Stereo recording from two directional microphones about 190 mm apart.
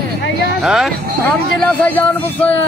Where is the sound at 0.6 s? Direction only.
Centre (ahead or behind).